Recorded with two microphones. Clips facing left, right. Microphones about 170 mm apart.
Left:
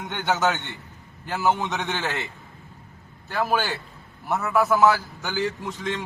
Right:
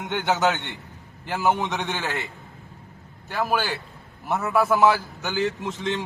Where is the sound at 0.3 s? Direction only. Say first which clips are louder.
Right 1 dB; 20° right (ahead or behind).